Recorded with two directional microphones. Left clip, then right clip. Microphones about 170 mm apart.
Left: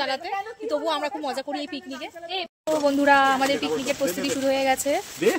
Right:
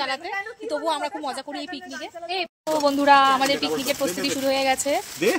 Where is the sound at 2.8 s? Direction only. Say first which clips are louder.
Right 2 dB; 10° left (ahead or behind).